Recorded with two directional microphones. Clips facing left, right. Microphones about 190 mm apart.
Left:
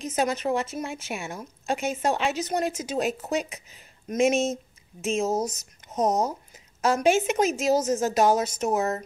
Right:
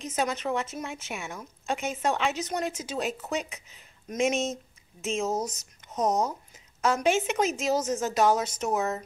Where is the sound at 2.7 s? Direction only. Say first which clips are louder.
Left 4 dB; 45° left (ahead or behind).